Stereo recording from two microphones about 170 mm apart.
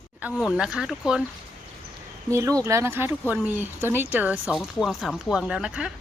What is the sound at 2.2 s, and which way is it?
Speech, 20° right (ahead or behind).